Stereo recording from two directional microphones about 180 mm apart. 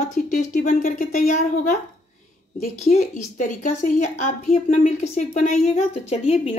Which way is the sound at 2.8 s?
45° left (ahead or behind).